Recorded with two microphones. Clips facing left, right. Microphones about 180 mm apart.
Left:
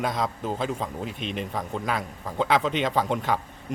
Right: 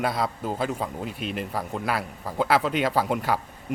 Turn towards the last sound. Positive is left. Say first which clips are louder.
# right 1 dB
turn(degrees=-10)  # may be behind; listen again after turning